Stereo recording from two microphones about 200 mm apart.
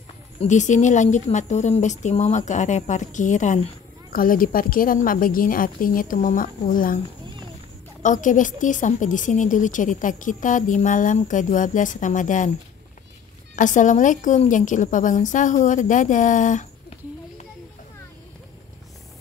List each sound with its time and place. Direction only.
0.4 s a woman's voice: 35° left (ahead or behind)
8.0 s a woman's voice: 40° left (ahead or behind)
13.6 s a woman's voice: 40° left (ahead or behind)